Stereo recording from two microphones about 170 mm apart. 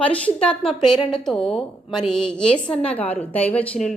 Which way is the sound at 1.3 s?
35° left (ahead or behind).